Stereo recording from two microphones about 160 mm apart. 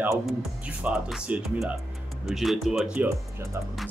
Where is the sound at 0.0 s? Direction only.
10° right (ahead or behind).